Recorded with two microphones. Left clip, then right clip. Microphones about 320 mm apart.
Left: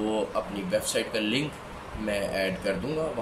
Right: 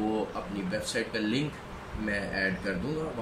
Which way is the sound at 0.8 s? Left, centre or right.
Centre.